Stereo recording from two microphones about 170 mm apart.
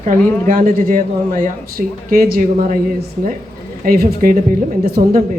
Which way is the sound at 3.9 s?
60° right (ahead or behind).